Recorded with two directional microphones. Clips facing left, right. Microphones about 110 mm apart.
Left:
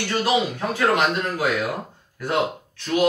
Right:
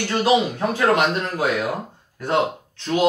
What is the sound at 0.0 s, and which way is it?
Speech, 25° right (ahead or behind).